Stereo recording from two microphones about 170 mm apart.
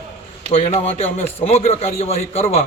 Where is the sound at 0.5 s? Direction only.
35° left (ahead or behind).